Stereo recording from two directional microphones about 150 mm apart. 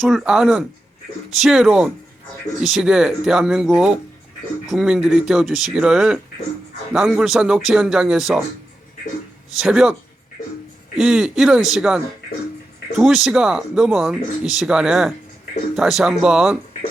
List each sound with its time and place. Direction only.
0.0 s speech: centre (ahead or behind)
9.6 s speech: 5° right (ahead or behind)
10.9 s speech: 5° right (ahead or behind)